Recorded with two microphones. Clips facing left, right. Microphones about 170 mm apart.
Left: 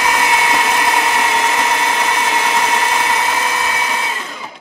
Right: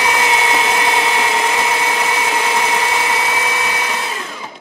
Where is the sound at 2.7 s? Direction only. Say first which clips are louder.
Left 1 dB; 15° right (ahead or behind).